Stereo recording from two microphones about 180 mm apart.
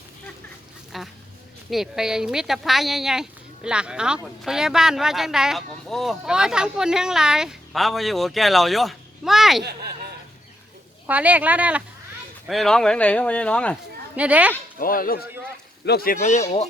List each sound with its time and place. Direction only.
0.9 s speech: centre (ahead or behind)
11.0 s speech: 10° right (ahead or behind)
14.2 s speech: 10° right (ahead or behind)
14.8 s speech: 50° left (ahead or behind)
16.2 s speech: 40° left (ahead or behind)